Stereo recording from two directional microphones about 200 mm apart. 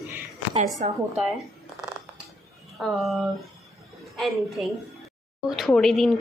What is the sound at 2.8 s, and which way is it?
Speech, centre (ahead or behind).